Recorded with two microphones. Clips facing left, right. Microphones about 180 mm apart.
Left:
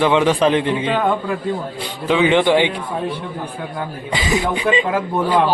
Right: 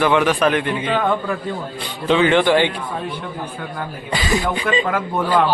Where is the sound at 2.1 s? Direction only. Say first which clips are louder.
Even; 15° left (ahead or behind).